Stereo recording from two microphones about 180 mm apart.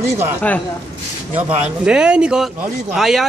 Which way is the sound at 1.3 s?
35° right (ahead or behind).